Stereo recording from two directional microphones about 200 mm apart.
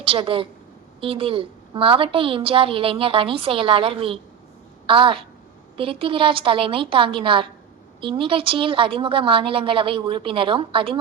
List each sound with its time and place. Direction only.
0.0 s a woman's voice: 25° right (ahead or behind)